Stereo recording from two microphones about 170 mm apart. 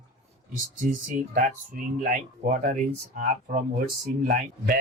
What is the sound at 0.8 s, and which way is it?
Speech, 50° right (ahead or behind).